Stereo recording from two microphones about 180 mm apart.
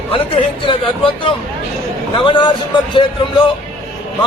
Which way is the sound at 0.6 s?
30° left (ahead or behind).